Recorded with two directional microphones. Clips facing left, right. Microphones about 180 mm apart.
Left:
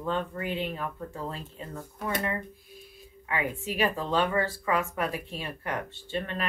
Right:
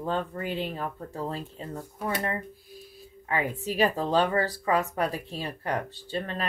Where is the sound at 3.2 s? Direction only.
40° right (ahead or behind).